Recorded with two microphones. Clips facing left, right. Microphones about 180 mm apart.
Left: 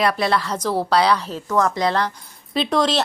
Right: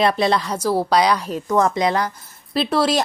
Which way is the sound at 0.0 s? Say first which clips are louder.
Right 2 dB; 20° right (ahead or behind).